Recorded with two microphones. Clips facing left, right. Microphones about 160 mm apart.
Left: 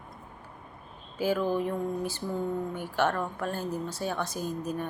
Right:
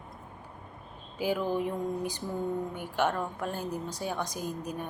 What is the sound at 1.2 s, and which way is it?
A woman's voice, 15° right (ahead or behind).